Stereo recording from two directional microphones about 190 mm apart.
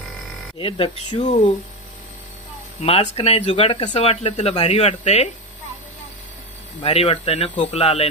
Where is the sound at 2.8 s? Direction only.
30° left (ahead or behind).